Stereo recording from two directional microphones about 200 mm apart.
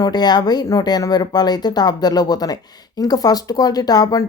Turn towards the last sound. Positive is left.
turn(degrees=20)  # may be behind; listen again after turning